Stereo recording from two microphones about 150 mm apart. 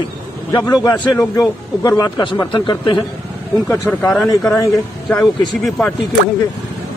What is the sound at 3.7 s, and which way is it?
Speech, 15° left (ahead or behind).